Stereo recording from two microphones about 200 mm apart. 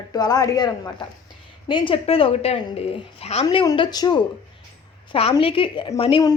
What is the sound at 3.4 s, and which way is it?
Speech, 20° left (ahead or behind).